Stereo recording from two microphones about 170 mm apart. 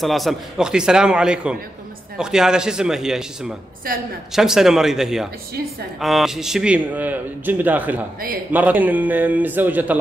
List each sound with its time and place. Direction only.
0.0 s a man's voice: centre (ahead or behind)
3.9 s a woman's voice: 55° right (ahead or behind)
4.3 s a man's voice: 5° right (ahead or behind)